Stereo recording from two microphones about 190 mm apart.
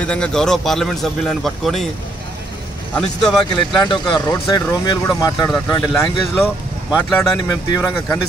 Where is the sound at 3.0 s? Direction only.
Centre (ahead or behind).